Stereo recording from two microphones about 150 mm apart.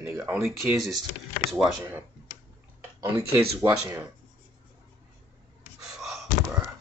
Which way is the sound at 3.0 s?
15° right (ahead or behind).